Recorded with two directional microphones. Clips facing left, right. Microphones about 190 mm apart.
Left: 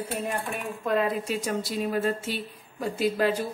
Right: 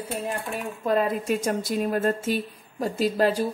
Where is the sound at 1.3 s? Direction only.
50° right (ahead or behind).